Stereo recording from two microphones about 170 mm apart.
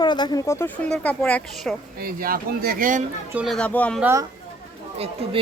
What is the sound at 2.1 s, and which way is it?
Speech, 60° right (ahead or behind).